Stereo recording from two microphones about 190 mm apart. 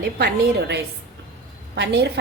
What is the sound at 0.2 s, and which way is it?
A woman's voice, 55° right (ahead or behind).